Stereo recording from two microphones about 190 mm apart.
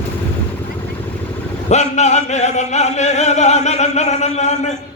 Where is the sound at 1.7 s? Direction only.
35° left (ahead or behind).